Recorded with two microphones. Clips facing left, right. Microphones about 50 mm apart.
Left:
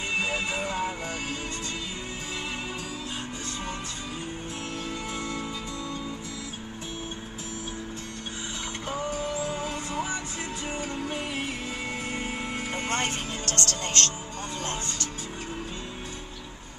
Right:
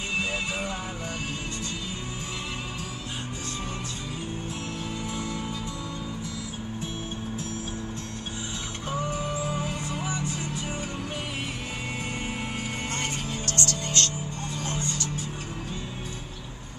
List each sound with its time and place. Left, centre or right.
12.9 s music: left
13.6 s music: left